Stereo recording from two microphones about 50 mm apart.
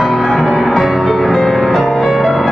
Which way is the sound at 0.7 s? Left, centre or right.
Centre.